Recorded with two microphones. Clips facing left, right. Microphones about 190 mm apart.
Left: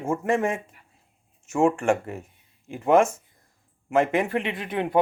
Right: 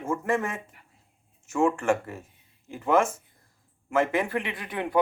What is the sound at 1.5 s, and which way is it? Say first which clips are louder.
Speech: left 3 dB; 25° left (ahead or behind).